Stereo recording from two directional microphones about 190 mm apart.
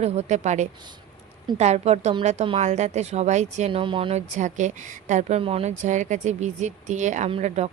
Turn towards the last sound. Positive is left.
turn(degrees=-35)  # may be behind; listen again after turning